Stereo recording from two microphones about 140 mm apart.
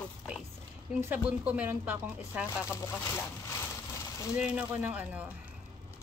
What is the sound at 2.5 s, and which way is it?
Speech, 20° left (ahead or behind).